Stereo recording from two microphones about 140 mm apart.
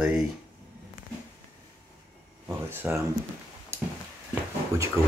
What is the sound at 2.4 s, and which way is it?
Speech, 15° right (ahead or behind).